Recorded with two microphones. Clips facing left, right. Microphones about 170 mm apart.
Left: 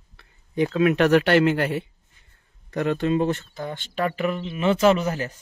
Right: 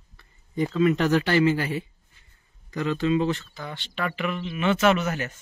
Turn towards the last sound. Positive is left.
turn(degrees=30)  # may be behind; listen again after turning